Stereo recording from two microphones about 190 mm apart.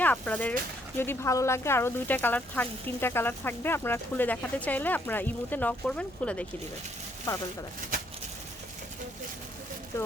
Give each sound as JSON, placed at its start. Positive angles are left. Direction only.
{"t": 0.0, "sound": "speech", "side_deg": 10}